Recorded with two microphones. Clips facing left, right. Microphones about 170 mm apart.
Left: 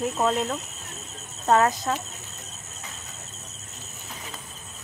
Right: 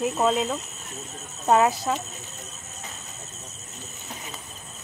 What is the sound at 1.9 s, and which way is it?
Speech, 5° right (ahead or behind).